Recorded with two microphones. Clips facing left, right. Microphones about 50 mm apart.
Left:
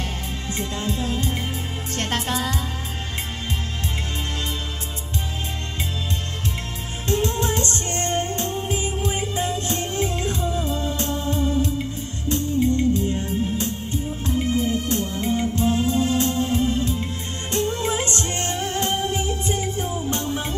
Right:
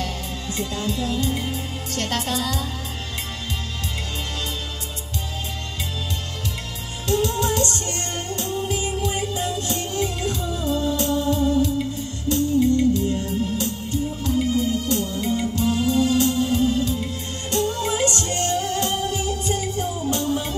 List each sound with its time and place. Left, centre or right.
0.0 s music: left
7.1 s music: left